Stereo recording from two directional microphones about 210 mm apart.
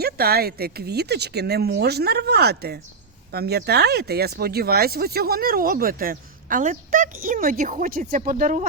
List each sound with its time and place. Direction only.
0.0 s speech: 50° right (ahead or behind)